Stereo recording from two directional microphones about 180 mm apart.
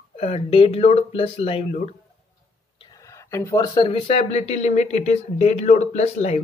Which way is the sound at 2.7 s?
25° left (ahead or behind).